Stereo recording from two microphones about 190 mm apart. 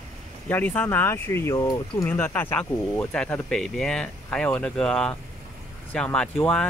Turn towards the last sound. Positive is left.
turn(degrees=5)  # may be behind; listen again after turning